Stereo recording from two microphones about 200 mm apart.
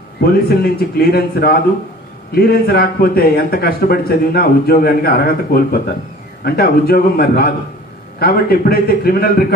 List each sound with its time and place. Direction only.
0.2 s a man's voice: 50° left (ahead or behind)